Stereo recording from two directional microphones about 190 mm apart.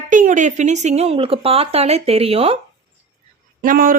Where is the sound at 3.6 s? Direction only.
45° right (ahead or behind).